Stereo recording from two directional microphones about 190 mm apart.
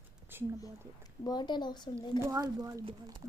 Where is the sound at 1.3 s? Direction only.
25° left (ahead or behind).